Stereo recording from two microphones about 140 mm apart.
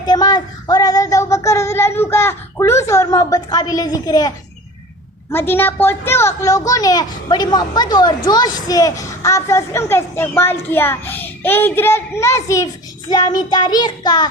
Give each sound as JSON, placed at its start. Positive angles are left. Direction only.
{"t": 0.0, "sound": "a woman's voice", "side_deg": 30}
{"t": 5.3, "sound": "a woman's voice", "side_deg": 15}